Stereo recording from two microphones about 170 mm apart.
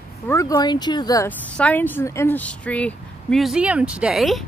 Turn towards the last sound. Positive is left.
turn(degrees=0)  # may be behind; listen again after turning